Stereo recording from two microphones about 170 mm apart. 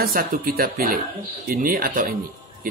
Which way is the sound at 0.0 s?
60° right (ahead or behind).